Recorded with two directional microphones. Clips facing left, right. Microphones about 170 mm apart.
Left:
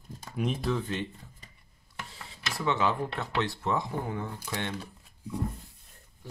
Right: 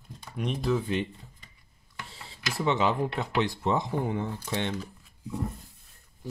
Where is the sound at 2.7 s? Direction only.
20° right (ahead or behind).